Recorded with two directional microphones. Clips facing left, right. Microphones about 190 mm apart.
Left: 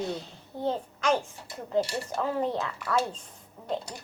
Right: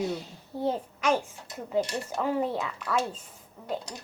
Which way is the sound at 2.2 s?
10° right (ahead or behind).